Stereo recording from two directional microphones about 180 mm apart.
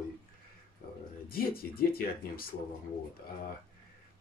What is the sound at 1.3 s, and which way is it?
Speech, 55° left (ahead or behind).